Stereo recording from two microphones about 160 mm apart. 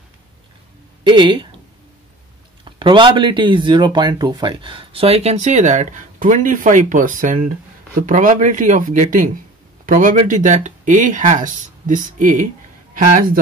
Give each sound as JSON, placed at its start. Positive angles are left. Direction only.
{"t": 1.0, "sound": "speech", "side_deg": -30}
{"t": 2.6, "sound": "speech", "side_deg": -30}